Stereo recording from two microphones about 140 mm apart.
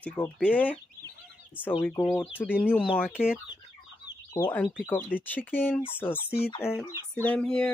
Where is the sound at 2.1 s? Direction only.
Centre (ahead or behind).